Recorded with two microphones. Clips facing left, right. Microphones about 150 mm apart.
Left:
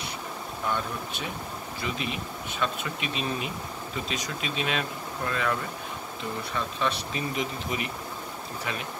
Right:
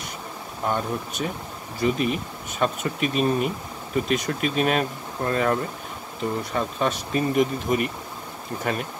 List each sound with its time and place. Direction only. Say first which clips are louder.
0.7 s speech: right 5 dB; 45° right (ahead or behind)